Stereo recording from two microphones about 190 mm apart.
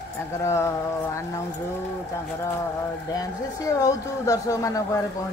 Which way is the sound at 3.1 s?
20° left (ahead or behind).